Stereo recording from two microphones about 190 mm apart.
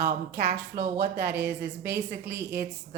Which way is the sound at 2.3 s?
15° right (ahead or behind).